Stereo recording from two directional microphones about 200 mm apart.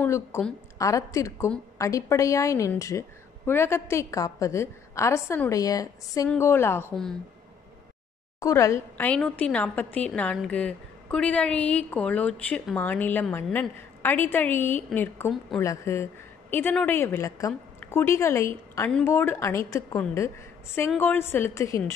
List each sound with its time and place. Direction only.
0.0 s a woman's voice: 10° left (ahead or behind)
8.4 s a woman's voice: 15° left (ahead or behind)